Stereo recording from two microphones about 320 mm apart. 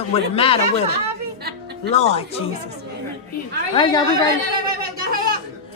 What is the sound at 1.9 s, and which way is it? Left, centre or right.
Music, centre.